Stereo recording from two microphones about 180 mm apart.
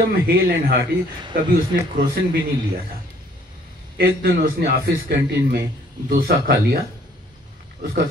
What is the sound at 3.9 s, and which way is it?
A man's voice, 60° right (ahead or behind).